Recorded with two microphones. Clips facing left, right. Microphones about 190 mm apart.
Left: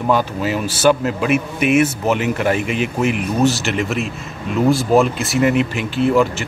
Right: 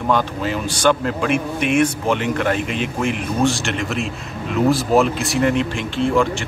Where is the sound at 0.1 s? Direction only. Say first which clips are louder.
Left 2 dB; 5° left (ahead or behind).